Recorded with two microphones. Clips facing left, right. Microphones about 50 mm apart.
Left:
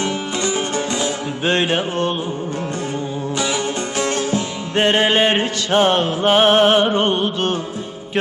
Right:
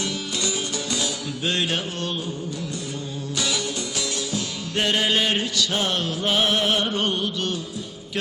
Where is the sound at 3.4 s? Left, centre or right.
Left.